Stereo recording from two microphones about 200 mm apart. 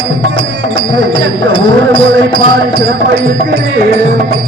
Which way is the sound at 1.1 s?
25° left (ahead or behind).